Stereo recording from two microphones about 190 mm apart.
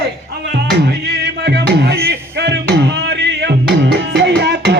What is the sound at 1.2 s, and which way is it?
Music, 60° right (ahead or behind).